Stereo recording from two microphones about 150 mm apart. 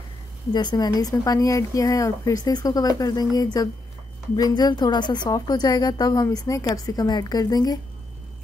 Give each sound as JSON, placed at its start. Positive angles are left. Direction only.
{"t": 0.5, "sound": "a woman's voice", "side_deg": 30}